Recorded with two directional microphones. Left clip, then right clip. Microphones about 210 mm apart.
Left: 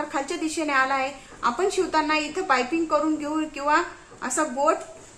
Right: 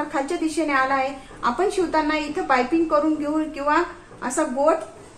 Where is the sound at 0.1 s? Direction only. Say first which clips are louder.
Right 3 dB; 20° left (ahead or behind).